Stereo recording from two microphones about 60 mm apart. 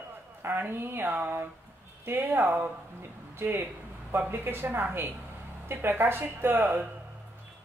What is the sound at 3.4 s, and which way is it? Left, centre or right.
Speech, right.